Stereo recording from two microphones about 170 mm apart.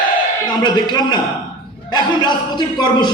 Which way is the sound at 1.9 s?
25° left (ahead or behind).